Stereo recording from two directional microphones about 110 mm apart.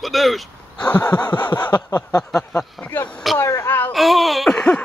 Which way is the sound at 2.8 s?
15° left (ahead or behind).